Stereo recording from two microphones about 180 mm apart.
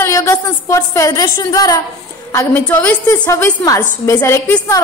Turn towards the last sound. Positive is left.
turn(degrees=15)  # may be behind; listen again after turning